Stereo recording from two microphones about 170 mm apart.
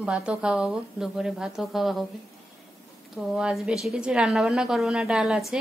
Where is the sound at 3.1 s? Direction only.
Centre (ahead or behind).